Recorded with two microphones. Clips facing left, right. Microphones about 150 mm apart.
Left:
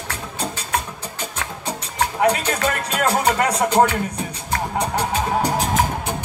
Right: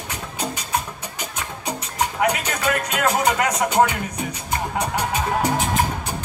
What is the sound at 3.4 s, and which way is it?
Speech, 30° left (ahead or behind).